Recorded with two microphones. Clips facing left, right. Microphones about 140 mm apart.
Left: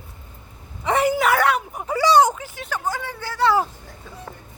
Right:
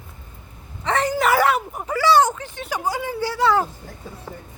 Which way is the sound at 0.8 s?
10° left (ahead or behind).